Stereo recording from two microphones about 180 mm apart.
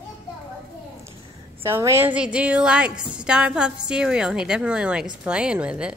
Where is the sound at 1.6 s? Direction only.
15° right (ahead or behind).